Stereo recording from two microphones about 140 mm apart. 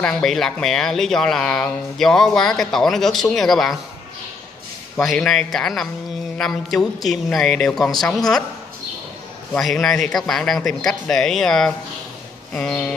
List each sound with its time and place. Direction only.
0.0 s speech: 5° left (ahead or behind)
5.0 s speech: centre (ahead or behind)
9.5 s speech: 5° left (ahead or behind)
12.5 s a sound: 10° left (ahead or behind)